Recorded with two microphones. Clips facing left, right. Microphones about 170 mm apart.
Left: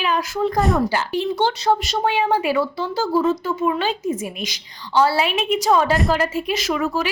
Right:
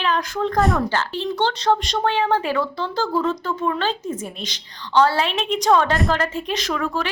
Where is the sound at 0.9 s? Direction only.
10° left (ahead or behind).